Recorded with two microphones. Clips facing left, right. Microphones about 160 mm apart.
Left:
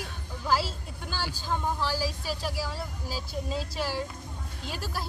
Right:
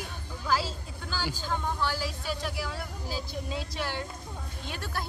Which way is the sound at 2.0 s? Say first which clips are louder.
Left 2 dB; 30° left (ahead or behind).